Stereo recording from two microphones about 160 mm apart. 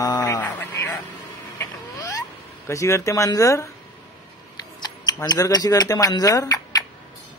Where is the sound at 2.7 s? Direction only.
20° left (ahead or behind).